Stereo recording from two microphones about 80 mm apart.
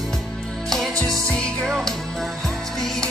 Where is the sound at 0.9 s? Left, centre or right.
Right.